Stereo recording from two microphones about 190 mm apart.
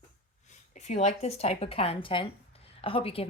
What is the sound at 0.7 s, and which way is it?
Speech, 35° left (ahead or behind).